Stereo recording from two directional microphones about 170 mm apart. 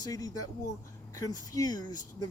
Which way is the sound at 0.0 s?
20° left (ahead or behind).